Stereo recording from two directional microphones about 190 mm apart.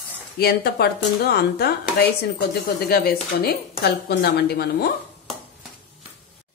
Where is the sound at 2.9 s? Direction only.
55° left (ahead or behind).